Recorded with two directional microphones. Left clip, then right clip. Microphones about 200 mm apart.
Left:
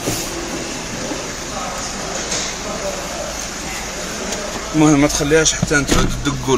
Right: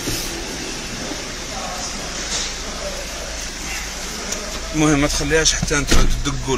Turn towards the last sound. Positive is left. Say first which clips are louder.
# left 3 dB
turn(degrees=0)  # may be behind; listen again after turning